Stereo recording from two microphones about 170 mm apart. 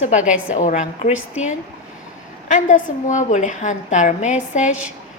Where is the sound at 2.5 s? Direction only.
45° left (ahead or behind).